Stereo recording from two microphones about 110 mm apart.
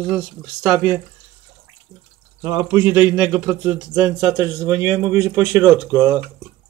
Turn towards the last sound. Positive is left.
turn(degrees=-25)  # may be behind; listen again after turning